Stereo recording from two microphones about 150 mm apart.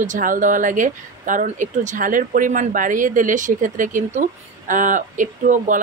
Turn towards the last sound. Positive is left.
turn(degrees=-60)  # may be behind; listen again after turning